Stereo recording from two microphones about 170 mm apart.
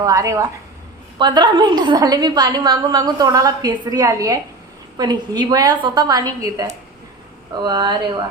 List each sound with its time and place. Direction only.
0.0 s a woman's voice: 20° right (ahead or behind)